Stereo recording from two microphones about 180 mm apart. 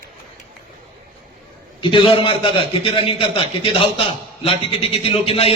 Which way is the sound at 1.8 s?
25° left (ahead or behind).